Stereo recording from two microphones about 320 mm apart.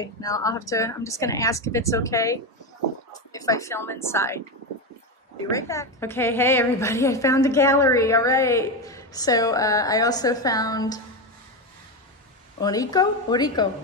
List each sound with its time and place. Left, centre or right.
0.0 s a woman's voice: centre
5.5 s a woman's voice: centre
12.5 s a woman's voice: centre